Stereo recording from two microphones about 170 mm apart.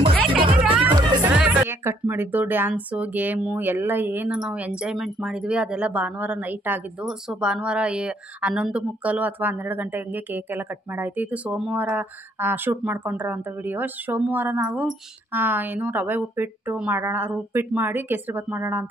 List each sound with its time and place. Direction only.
0.3 s music: 30° right (ahead or behind)
0.6 s music: 10° right (ahead or behind)
0.9 s music: 25° right (ahead or behind)
1.2 s speech: 10° right (ahead or behind)